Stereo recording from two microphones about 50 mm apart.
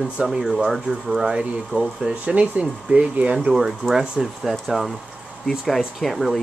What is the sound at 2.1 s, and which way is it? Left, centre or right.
Speech, right.